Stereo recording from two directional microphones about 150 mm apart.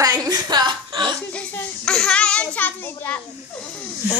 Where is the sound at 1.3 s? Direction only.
5° left (ahead or behind).